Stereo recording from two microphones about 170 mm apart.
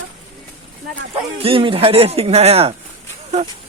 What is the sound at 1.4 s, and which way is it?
Speech, 35° right (ahead or behind).